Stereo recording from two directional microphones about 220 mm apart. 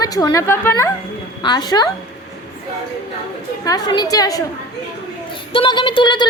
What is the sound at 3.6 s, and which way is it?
Speech, 20° left (ahead or behind).